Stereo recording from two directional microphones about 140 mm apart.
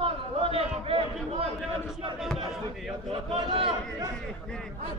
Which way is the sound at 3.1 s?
40° right (ahead or behind).